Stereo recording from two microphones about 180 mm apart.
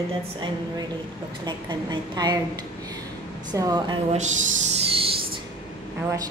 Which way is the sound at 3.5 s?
20° right (ahead or behind).